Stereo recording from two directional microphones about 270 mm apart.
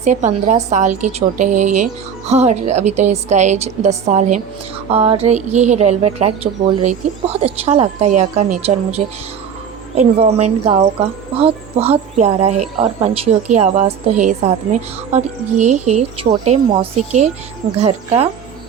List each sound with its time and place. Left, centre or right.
0.0 s a woman's voice: right